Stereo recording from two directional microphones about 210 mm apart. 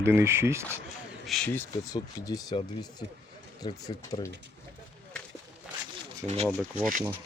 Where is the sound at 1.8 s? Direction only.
15° left (ahead or behind).